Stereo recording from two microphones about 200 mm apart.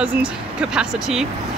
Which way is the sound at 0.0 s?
5° right (ahead or behind).